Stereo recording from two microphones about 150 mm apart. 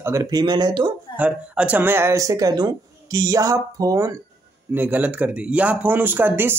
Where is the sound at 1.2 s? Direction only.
10° right (ahead or behind).